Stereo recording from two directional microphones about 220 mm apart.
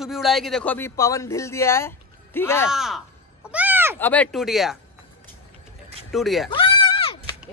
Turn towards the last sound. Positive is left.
turn(degrees=25)  # may be behind; listen again after turning